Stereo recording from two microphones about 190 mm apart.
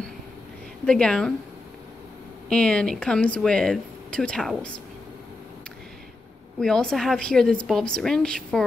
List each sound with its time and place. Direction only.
0.8 s speech: 5° left (ahead or behind)
2.5 s speech: 5° left (ahead or behind)
6.6 s speech: 5° left (ahead or behind)